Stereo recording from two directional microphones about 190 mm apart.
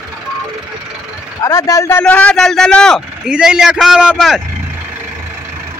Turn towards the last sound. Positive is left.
turn(degrees=0)  # may be behind; listen again after turning